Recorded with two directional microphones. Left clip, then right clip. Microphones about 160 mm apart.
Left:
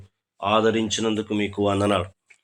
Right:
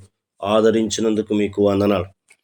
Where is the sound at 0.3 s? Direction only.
45° right (ahead or behind).